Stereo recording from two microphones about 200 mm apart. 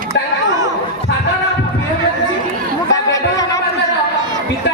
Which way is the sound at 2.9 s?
15° left (ahead or behind).